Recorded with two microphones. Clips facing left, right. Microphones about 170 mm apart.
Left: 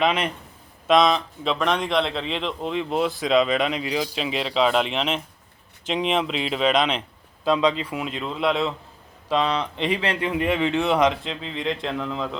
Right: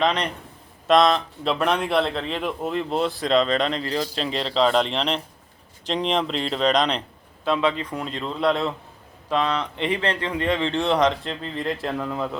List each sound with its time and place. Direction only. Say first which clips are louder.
0.0 s speech: even; 10° left (ahead or behind)